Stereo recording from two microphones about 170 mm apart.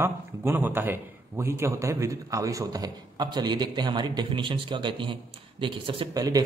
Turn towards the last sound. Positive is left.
turn(degrees=-20)  # may be behind; listen again after turning